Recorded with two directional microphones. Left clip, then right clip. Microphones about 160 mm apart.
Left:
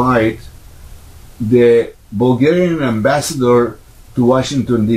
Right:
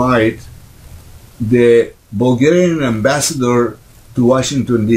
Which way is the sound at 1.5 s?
25° right (ahead or behind).